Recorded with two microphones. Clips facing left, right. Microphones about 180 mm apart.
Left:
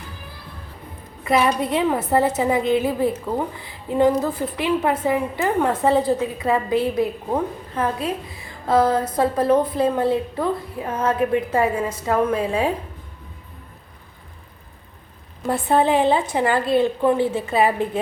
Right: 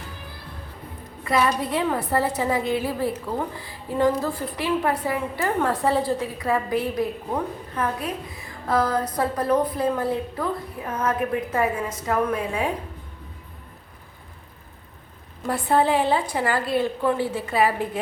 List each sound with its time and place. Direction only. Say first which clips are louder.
1.2 s a woman's voice: left 3 dB; 20° left (ahead or behind)
15.4 s a woman's voice: left 2 dB; 20° left (ahead or behind)